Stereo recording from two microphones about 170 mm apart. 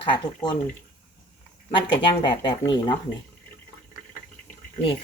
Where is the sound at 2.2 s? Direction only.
25° left (ahead or behind).